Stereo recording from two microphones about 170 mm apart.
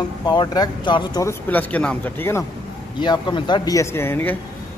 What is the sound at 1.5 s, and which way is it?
Speech, 10° left (ahead or behind).